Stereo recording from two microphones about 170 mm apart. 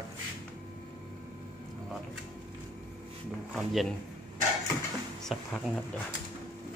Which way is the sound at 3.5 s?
Centre (ahead or behind).